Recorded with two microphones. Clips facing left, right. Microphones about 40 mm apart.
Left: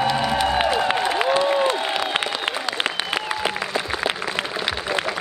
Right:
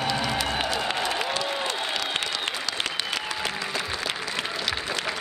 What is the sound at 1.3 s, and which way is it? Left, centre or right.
Applause, left.